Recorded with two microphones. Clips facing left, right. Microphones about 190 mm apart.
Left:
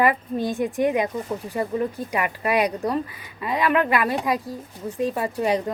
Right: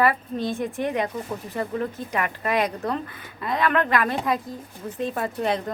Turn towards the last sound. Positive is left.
turn(degrees=10)  # may be behind; listen again after turning